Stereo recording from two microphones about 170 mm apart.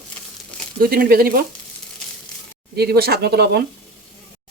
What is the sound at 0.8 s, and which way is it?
Speech, 60° right (ahead or behind).